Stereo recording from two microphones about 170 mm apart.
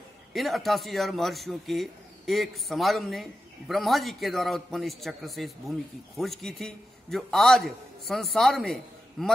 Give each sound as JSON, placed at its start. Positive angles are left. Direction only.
{"t": 0.3, "sound": "a man's voice", "side_deg": 0}